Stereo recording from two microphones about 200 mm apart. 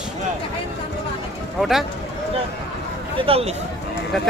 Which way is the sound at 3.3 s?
30° right (ahead or behind).